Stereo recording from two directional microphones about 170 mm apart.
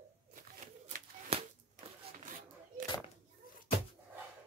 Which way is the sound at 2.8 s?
25° left (ahead or behind).